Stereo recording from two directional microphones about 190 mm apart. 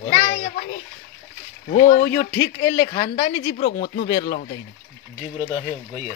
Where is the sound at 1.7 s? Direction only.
45° left (ahead or behind).